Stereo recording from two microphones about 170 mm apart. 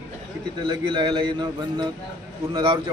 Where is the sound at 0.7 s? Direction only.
25° right (ahead or behind).